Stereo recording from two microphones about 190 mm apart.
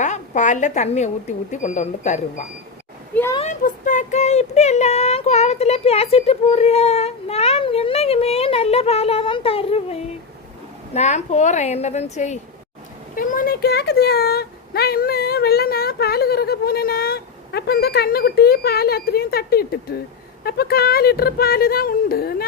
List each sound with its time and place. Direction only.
0.0 s speech: 40° left (ahead or behind)